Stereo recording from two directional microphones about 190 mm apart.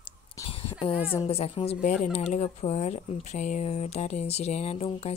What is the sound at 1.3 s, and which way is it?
Speech, 30° left (ahead or behind).